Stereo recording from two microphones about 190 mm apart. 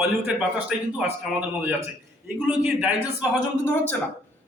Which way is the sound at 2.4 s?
5° right (ahead or behind).